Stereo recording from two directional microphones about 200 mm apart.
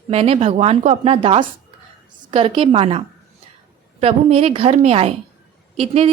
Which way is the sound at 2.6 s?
30° right (ahead or behind).